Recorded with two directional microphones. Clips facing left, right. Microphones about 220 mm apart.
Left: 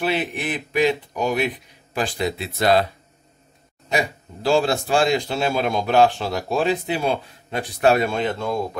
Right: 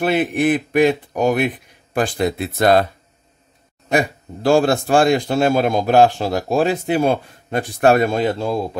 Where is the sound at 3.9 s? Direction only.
50° right (ahead or behind).